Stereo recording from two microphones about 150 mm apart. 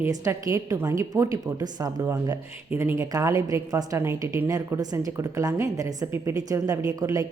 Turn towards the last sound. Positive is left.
turn(degrees=-25)  # may be behind; listen again after turning